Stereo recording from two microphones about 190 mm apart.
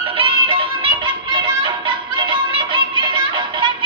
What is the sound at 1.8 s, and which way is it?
Music, 25° right (ahead or behind).